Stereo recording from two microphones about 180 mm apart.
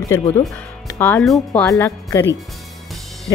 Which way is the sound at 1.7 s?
15° left (ahead or behind).